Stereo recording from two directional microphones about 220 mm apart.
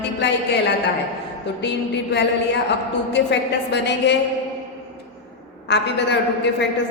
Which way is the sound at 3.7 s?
50° left (ahead or behind).